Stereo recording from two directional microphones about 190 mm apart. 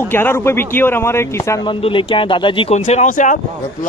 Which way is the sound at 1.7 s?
25° left (ahead or behind).